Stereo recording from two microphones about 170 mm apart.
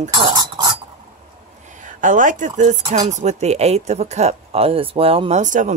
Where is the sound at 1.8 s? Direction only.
50° right (ahead or behind); by 5.4 s 35° right (ahead or behind).